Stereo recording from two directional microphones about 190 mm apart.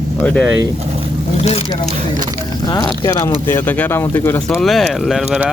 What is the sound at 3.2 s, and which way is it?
Speech, 10° left (ahead or behind).